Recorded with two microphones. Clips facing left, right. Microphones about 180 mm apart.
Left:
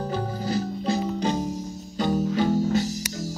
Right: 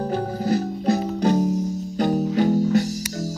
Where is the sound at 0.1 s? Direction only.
45° right (ahead or behind).